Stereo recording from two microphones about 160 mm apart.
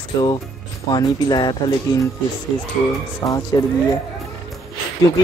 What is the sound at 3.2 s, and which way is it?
Speech, 20° left (ahead or behind).